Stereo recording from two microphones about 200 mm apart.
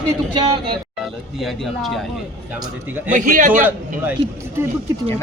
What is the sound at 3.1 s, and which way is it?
Speech, 40° right (ahead or behind).